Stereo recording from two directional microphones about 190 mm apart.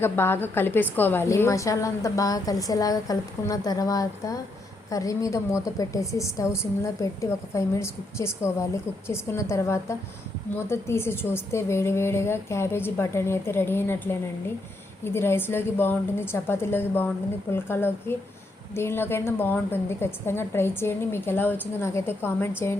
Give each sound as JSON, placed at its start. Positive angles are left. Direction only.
{"t": 0.0, "sound": "a woman's voice", "side_deg": 10}